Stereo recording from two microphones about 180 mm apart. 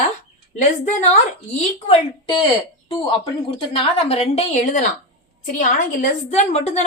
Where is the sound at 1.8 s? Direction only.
25° left (ahead or behind).